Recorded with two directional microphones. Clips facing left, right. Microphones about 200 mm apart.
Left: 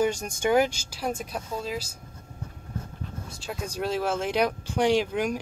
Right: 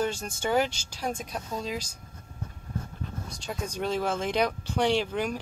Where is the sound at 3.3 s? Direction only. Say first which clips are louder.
Left 1 dB; 5° left (ahead or behind).